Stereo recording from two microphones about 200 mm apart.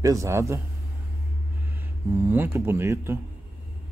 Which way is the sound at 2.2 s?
10° right (ahead or behind).